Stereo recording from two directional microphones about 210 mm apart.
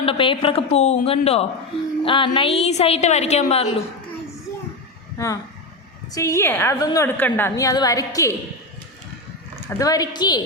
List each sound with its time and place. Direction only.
0.0 s a woman's voice: 25° left (ahead or behind)
5.1 s a woman's voice: 15° left (ahead or behind)
9.6 s a woman's voice: 15° left (ahead or behind)